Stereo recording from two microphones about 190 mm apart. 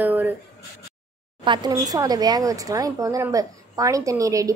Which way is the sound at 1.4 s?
25° right (ahead or behind).